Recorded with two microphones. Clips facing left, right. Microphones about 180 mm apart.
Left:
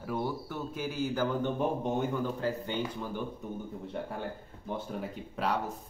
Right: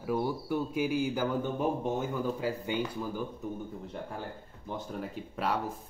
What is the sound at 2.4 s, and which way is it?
Speech, 10° right (ahead or behind).